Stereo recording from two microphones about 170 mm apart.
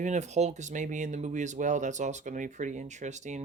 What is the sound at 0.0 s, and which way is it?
Speech, 45° right (ahead or behind).